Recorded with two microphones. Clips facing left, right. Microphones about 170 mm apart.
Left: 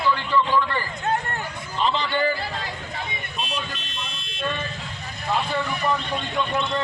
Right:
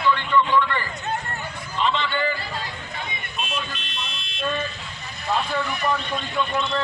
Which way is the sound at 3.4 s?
40° left (ahead or behind).